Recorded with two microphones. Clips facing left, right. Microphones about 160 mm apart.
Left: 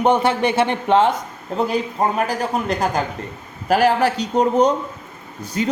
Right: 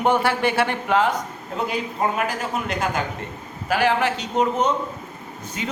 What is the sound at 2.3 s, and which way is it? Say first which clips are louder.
Speech: left 5 dB; 35° left (ahead or behind).